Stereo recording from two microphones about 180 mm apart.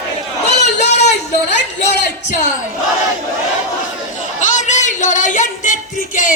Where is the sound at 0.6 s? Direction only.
40° left (ahead or behind).